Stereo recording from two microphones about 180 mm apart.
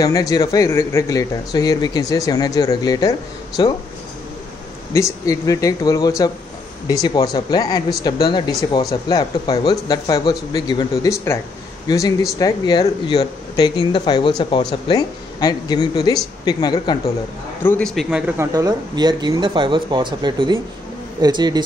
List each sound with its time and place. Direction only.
0.0 s speech: 20° left (ahead or behind)
4.9 s speech: 15° left (ahead or behind)
17.6 s a man's voice: 5° left (ahead or behind)
18.4 s speech: 20° right (ahead or behind)